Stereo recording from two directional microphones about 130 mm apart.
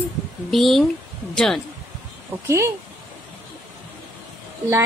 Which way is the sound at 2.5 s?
20° right (ahead or behind).